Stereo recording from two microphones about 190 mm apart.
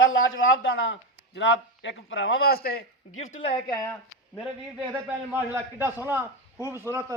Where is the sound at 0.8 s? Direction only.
75° left (ahead or behind).